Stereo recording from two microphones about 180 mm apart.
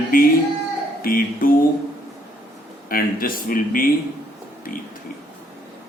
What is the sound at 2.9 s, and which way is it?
Speech, 55° left (ahead or behind).